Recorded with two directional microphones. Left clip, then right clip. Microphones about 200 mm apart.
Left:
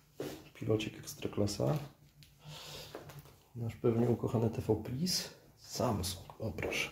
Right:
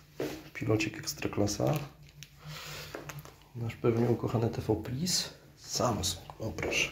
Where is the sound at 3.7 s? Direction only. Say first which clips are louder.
Right 3 dB; 20° left (ahead or behind).